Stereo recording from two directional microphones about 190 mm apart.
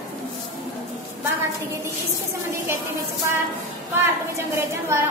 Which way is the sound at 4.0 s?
15° right (ahead or behind).